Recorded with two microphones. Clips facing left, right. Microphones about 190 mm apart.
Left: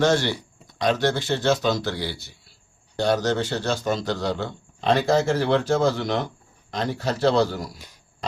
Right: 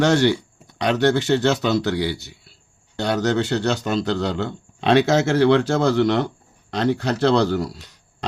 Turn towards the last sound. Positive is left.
turn(degrees=-70)  # may be behind; listen again after turning